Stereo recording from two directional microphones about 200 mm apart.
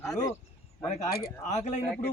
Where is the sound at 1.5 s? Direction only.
35° left (ahead or behind).